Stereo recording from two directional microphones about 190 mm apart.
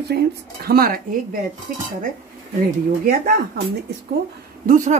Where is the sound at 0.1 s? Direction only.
60° right (ahead or behind).